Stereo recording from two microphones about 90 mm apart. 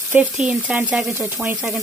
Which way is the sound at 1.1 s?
25° right (ahead or behind).